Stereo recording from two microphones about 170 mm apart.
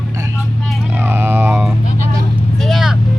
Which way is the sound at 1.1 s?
10° right (ahead or behind).